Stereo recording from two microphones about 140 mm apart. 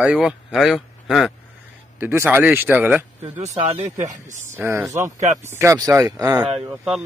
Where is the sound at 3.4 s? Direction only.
50° right (ahead or behind).